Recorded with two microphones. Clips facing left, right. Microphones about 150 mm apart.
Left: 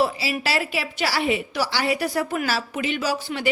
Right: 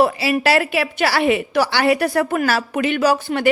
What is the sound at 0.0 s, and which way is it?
A woman's voice, 60° right (ahead or behind).